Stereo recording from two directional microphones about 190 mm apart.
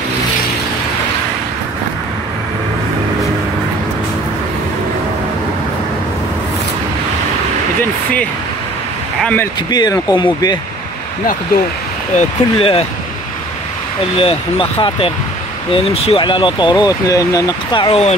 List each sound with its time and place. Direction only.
9.2 s speech: 10° left (ahead or behind)
9.7 s speech: 20° left (ahead or behind)
12.2 s speech: 30° left (ahead or behind)
14.1 s speech: 30° left (ahead or behind)